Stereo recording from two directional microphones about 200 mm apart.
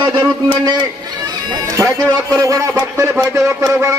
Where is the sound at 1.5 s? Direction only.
15° right (ahead or behind).